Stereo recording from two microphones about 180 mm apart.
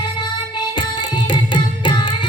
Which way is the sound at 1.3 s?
25° left (ahead or behind).